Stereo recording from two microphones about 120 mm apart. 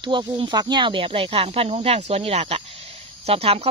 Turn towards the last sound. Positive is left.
turn(degrees=-55)  # may be behind; listen again after turning